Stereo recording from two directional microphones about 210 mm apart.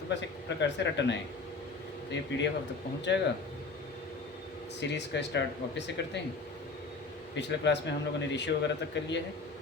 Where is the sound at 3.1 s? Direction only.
55° left (ahead or behind).